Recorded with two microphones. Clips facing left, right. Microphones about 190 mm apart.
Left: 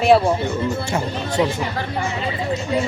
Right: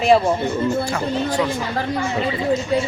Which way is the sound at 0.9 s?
25° left (ahead or behind).